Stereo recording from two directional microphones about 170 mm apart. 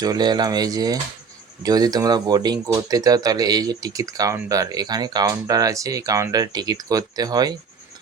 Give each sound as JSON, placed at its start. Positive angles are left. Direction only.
{"t": 0.0, "sound": "speech", "side_deg": -25}